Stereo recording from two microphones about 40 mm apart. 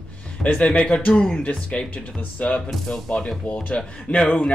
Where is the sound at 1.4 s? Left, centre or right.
Left.